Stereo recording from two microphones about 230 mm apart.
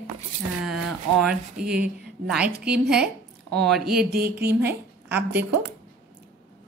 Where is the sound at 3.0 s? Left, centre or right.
Right.